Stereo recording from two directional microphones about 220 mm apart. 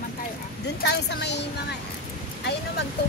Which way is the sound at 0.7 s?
50° left (ahead or behind).